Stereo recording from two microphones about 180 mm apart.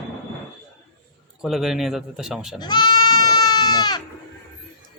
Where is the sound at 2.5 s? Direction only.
25° left (ahead or behind).